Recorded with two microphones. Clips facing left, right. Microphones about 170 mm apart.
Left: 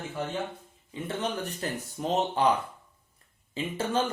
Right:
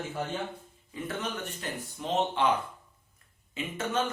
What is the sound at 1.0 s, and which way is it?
Speech, 35° left (ahead or behind).